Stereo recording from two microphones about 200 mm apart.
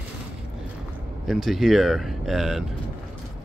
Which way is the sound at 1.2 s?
Centre (ahead or behind).